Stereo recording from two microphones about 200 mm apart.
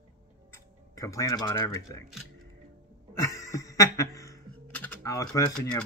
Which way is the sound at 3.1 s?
15° left (ahead or behind).